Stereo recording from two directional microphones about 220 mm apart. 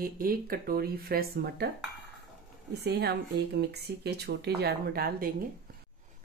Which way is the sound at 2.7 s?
50° right (ahead or behind).